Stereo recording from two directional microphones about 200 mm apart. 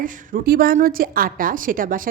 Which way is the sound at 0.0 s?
45° right (ahead or behind).